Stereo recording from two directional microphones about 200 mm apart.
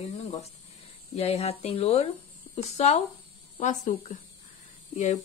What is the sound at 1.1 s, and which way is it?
Speech, 30° left (ahead or behind).